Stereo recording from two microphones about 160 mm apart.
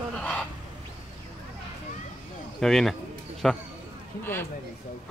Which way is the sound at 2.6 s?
Centre (ahead or behind).